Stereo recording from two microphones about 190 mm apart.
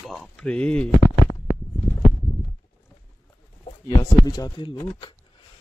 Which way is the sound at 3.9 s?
20° left (ahead or behind).